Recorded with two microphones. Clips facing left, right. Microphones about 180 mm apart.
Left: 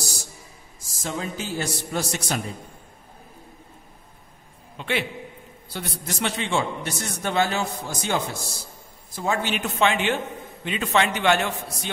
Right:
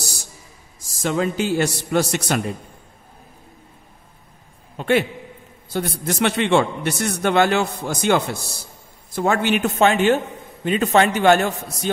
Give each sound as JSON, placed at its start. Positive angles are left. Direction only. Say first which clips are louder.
{"t": 1.0, "sound": "a man's voice", "louder": "right 9 dB", "side_deg": -75}
{"t": 4.7, "sound": "a man's voice", "louder": "right 8 dB", "side_deg": -45}